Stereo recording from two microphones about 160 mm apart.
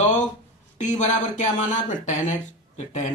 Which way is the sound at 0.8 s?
50° left (ahead or behind).